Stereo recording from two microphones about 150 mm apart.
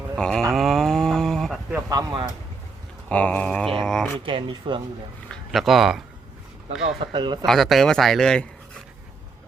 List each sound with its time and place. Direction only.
0.2 s speech: 5° left (ahead or behind)
0.5 s a sound: centre (ahead or behind)
1.9 s speech: 25° right (ahead or behind)
3.1 s a sound: 10° left (ahead or behind)
4.3 s speech: 35° right (ahead or behind)
5.3 s a man's voice: centre (ahead or behind)
7.0 s speech: 30° right (ahead or behind)
7.4 s speech: centre (ahead or behind)